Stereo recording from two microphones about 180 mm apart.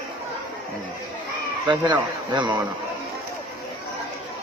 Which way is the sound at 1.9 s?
25° right (ahead or behind).